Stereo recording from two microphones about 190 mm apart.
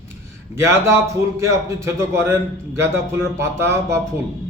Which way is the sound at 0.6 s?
15° right (ahead or behind).